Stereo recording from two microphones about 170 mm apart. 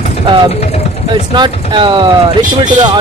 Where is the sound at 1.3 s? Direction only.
25° right (ahead or behind).